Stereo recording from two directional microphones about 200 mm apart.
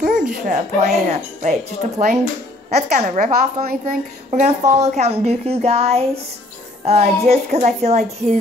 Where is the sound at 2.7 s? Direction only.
35° right (ahead or behind).